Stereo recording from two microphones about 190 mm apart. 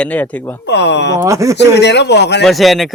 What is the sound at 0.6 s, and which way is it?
Speech, 65° left (ahead or behind).